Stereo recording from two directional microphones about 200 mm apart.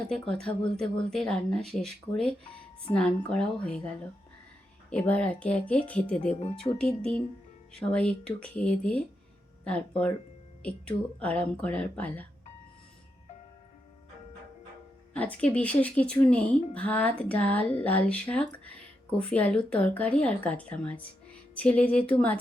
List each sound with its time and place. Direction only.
0.1 s speech: 5° left (ahead or behind)
10.6 s speech: 5° left (ahead or behind)
15.1 s speech: 5° left (ahead or behind)